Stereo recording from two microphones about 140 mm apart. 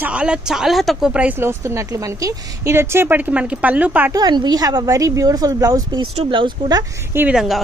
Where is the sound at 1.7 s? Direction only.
20° right (ahead or behind).